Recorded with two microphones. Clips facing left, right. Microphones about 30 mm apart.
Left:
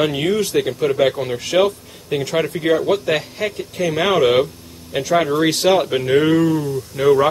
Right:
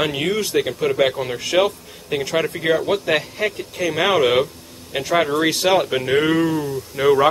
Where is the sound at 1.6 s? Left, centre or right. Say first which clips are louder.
Left 2 dB; centre.